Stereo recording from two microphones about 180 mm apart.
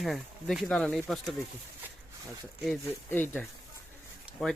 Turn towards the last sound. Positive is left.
turn(degrees=0)  # may be behind; listen again after turning